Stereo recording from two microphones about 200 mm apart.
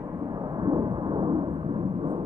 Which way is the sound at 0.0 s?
20° right (ahead or behind).